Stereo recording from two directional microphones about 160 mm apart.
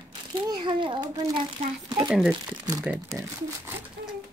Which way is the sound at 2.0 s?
5° right (ahead or behind).